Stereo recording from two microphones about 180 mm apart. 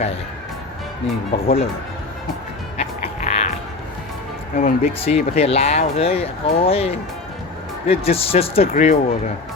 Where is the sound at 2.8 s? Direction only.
35° left (ahead or behind).